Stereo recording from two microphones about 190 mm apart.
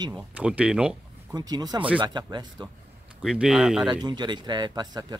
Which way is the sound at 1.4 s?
20° right (ahead or behind).